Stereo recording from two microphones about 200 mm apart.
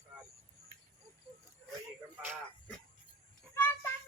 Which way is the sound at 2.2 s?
10° right (ahead or behind).